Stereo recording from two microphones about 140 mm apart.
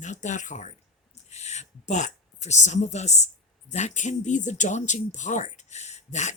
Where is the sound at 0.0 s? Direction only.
60° left (ahead or behind).